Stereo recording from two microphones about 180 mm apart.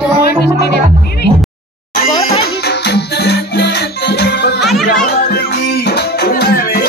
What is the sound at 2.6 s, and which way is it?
Music, 65° left (ahead or behind).